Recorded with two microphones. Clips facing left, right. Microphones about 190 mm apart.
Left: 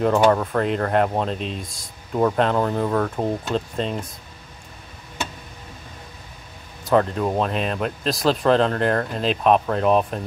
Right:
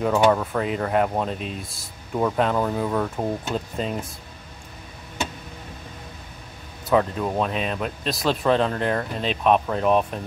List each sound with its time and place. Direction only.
0.0 s speech: 5° right (ahead or behind)
6.8 s speech: centre (ahead or behind)